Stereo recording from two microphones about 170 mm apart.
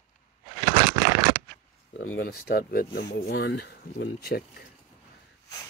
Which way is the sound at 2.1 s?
65° left (ahead or behind).